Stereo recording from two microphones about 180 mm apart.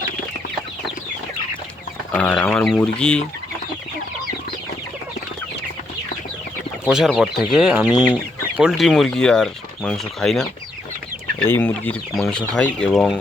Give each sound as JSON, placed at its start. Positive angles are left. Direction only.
{"t": 2.1, "sound": "speech", "side_deg": 10}
{"t": 6.8, "sound": "speech", "side_deg": -5}
{"t": 11.4, "sound": "speech", "side_deg": 10}